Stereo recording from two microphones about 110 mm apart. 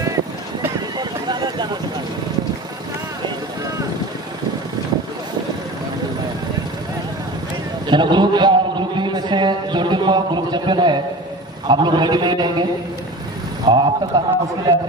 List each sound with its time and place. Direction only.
0.9 s a sound: 40° right (ahead or behind)
7.8 s a man's voice: 45° right (ahead or behind)
13.7 s a man's voice: 40° right (ahead or behind)